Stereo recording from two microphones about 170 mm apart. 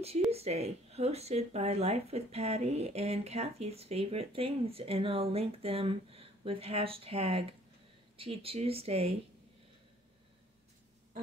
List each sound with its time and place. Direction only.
0.3 s speech: 40° right (ahead or behind)